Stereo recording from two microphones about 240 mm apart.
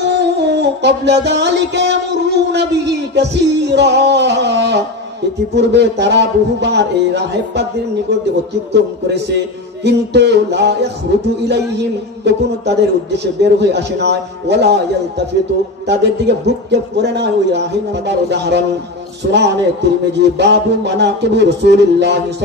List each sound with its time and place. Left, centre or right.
0.0 s music: right
5.5 s a man's voice: right
8.7 s a man's voice: right
12.3 s a man's voice: right